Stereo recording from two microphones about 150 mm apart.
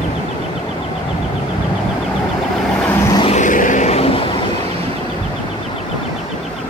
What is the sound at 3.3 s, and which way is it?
Vehicle, 55° left (ahead or behind).